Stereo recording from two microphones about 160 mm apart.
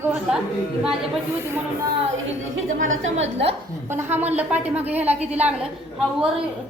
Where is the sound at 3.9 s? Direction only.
10° right (ahead or behind).